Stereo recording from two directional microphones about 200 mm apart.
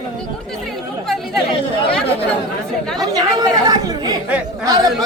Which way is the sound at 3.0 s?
20° right (ahead or behind).